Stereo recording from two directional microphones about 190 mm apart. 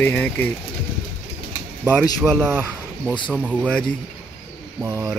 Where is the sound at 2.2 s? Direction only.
10° right (ahead or behind).